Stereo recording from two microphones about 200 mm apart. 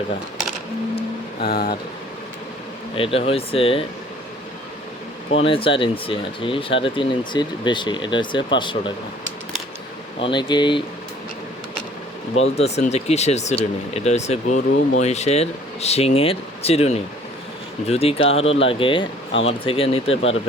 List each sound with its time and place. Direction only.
1.4 s speech: 45° left (ahead or behind)
2.9 s speech: 25° left (ahead or behind)
5.3 s speech: 30° left (ahead or behind)
10.2 s speech: 25° left (ahead or behind)
12.5 s speech: 30° left (ahead or behind)